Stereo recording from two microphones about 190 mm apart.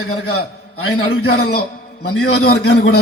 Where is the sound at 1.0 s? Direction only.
55° left (ahead or behind).